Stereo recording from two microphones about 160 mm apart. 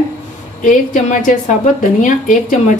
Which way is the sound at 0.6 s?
55° left (ahead or behind).